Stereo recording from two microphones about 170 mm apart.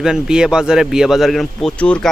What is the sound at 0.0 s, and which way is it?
Speech, 5° right (ahead or behind).